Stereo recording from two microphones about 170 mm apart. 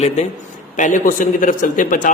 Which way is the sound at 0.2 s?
40° left (ahead or behind).